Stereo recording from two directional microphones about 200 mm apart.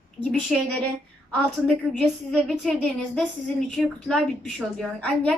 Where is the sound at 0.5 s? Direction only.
Centre (ahead or behind).